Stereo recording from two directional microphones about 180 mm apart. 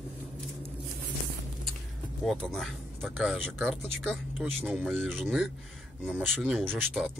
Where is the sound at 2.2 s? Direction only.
Centre (ahead or behind).